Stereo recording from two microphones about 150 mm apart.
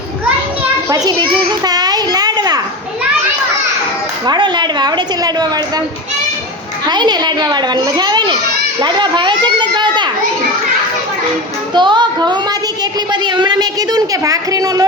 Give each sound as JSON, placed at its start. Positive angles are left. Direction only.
{"t": 0.9, "sound": "a child's voice", "side_deg": -25}
{"t": 4.3, "sound": "a woman's voice", "side_deg": -30}
{"t": 6.8, "sound": "a woman's voice", "side_deg": -30}
{"t": 11.7, "sound": "a woman's voice", "side_deg": -30}